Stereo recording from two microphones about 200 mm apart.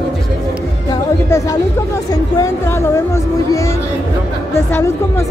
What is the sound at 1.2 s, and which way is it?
Chatter, 15° left (ahead or behind).